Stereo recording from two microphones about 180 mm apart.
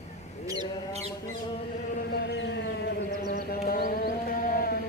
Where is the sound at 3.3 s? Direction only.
50° left (ahead or behind).